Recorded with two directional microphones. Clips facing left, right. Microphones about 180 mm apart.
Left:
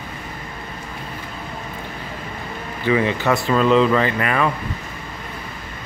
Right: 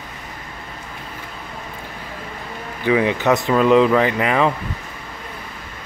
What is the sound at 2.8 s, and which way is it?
Speech, 15° right (ahead or behind).